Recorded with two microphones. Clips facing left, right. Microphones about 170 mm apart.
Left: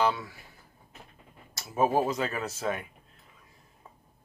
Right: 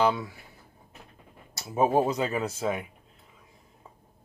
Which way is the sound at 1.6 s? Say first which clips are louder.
Right 2 dB; 20° right (ahead or behind).